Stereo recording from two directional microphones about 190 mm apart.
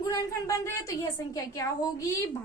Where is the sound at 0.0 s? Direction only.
20° left (ahead or behind).